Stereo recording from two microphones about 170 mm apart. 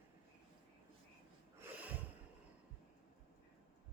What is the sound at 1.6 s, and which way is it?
Snort, 10° right (ahead or behind).